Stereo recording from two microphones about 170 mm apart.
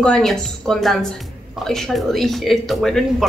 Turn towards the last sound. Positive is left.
turn(degrees=0)  # may be behind; listen again after turning